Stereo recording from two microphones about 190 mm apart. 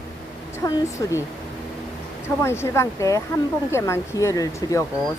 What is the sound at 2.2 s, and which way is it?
Speech, 15° left (ahead or behind).